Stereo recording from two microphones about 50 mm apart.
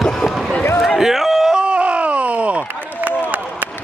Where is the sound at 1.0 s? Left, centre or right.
Centre.